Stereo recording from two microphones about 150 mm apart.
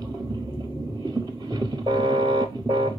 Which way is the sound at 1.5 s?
25° right (ahead or behind).